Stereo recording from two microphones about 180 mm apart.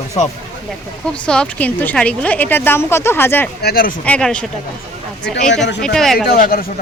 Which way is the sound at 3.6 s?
55° left (ahead or behind).